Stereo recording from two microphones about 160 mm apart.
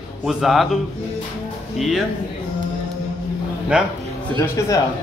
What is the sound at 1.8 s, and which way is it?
Speech, centre (ahead or behind).